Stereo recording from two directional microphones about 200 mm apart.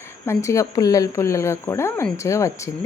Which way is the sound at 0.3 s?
15° left (ahead or behind).